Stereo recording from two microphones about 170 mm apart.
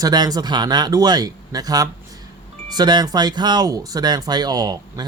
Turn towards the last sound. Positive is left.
turn(degrees=-20)  # may be behind; listen again after turning